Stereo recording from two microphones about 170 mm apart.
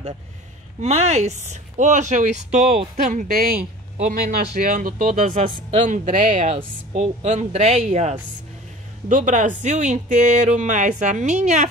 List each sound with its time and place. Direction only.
0.7 s speech: 40° right (ahead or behind); by 3.6 s 60° right (ahead or behind)
4.6 s speech: 55° right (ahead or behind)